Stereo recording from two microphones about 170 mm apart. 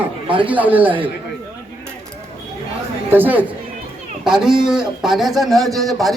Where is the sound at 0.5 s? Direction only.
10° right (ahead or behind).